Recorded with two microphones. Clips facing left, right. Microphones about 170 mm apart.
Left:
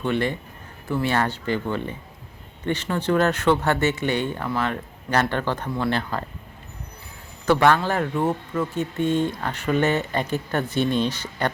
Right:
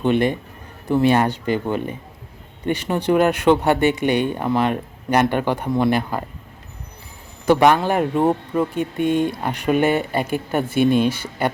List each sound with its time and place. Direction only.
0.0 s speech: 15° right (ahead or behind)
7.4 s speech: 15° right (ahead or behind)